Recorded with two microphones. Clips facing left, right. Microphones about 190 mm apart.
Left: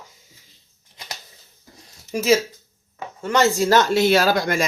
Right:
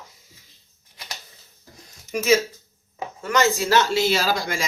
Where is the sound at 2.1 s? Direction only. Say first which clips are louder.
Left 1 dB; 35° left (ahead or behind); by 4.7 s 55° left (ahead or behind).